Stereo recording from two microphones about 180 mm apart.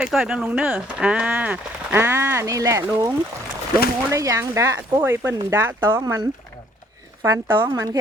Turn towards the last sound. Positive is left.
turn(degrees=-20)  # may be behind; listen again after turning